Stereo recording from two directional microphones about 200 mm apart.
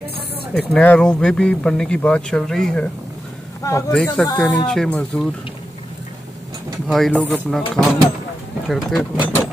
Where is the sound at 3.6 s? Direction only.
15° left (ahead or behind).